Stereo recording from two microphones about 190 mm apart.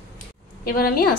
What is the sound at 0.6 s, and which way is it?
Speech, 55° left (ahead or behind).